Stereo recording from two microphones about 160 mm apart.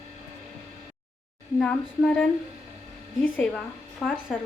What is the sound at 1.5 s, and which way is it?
Speech, 5° left (ahead or behind).